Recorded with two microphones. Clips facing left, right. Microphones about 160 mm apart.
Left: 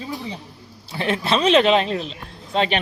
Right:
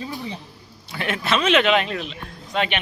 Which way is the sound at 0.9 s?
30° left (ahead or behind).